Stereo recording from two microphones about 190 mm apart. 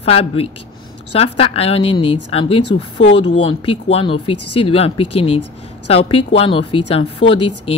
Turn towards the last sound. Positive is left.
turn(degrees=30)  # may be behind; listen again after turning